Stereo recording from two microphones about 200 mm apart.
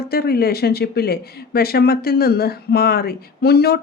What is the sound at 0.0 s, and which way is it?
Speech, 50° left (ahead or behind).